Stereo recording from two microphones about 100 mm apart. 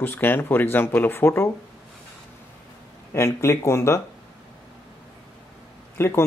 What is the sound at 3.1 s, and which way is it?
Speech, 25° left (ahead or behind).